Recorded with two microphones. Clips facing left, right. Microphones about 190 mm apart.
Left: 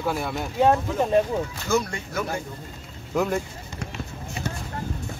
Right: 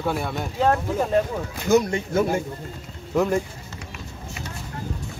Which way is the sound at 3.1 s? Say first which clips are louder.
Right 3 dB; centre (ahead or behind).